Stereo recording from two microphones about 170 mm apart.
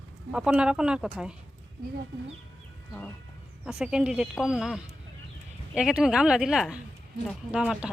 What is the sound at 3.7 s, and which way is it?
Speech, 5° right (ahead or behind).